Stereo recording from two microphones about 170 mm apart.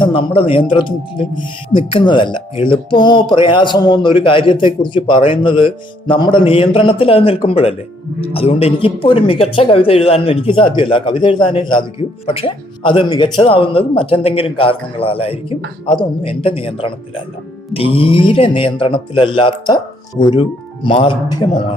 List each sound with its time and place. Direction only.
0.0 s speech: 30° left (ahead or behind)